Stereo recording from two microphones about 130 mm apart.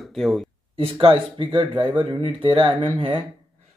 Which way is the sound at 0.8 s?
45° right (ahead or behind).